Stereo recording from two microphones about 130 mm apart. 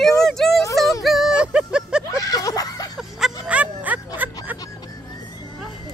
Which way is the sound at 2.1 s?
25° left (ahead or behind).